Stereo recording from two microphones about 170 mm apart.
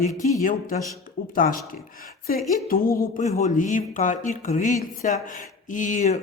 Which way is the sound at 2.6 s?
55° left (ahead or behind).